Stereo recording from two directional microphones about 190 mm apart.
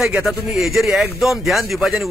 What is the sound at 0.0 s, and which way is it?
Speech, centre (ahead or behind).